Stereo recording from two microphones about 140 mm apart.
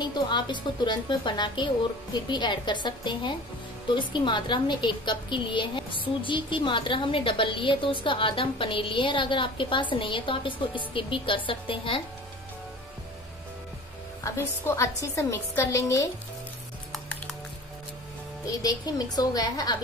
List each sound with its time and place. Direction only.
0.0 s a woman's voice: 35° left (ahead or behind)
14.2 s a woman's voice: 20° left (ahead or behind)
18.4 s a woman's voice: 25° left (ahead or behind)